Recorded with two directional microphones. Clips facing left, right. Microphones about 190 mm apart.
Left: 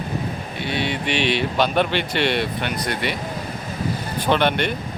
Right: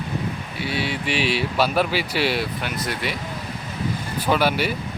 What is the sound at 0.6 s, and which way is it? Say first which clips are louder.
Speech: left 1 dB; 5° right (ahead or behind).